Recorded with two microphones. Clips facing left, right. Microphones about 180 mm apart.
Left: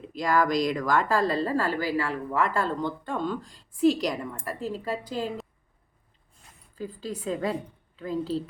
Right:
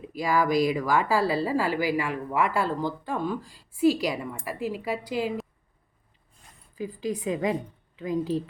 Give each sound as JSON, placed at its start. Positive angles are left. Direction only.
{"t": 0.1, "sound": "a woman's voice", "side_deg": -10}
{"t": 6.7, "sound": "a woman's voice", "side_deg": -15}